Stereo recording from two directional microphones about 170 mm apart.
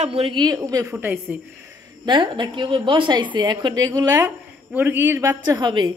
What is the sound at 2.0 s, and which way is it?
A woman's voice, 30° right (ahead or behind).